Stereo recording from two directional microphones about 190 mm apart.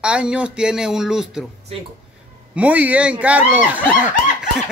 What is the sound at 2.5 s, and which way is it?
Speech, 5° right (ahead or behind).